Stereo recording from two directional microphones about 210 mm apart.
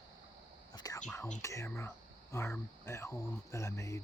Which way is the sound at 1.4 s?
15° left (ahead or behind).